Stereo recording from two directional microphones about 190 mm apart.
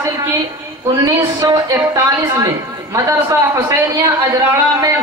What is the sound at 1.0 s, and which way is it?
A man's voice, 15° right (ahead or behind).